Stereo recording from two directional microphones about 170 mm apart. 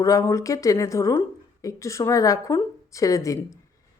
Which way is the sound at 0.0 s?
20° left (ahead or behind).